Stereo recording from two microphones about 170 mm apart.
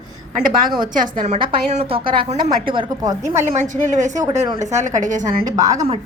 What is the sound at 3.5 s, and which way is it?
Speech, 45° right (ahead or behind).